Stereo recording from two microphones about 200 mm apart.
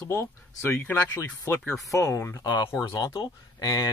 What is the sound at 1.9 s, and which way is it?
Speech, 15° left (ahead or behind).